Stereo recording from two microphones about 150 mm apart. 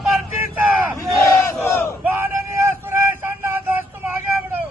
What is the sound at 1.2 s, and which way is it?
Battle cry, 15° left (ahead or behind).